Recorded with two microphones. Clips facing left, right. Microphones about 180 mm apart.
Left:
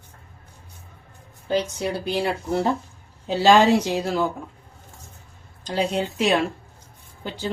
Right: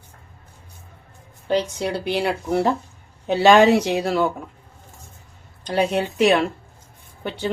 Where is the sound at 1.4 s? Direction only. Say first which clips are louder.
Right 2 dB; 70° right (ahead or behind).